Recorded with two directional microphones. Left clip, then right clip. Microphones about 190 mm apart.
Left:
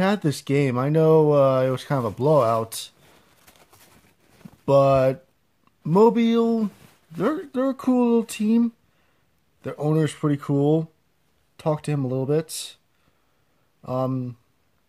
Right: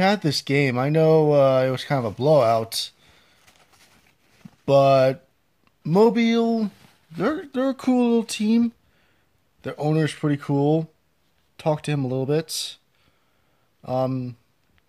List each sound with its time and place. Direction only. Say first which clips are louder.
0.0 s speech: right 3 dB; centre (ahead or behind)
3.1 s a sound: left 1 dB; 55° left (ahead or behind)
4.6 s speech: right 1 dB; 5° left (ahead or behind)
13.8 s speech: right 2 dB; centre (ahead or behind)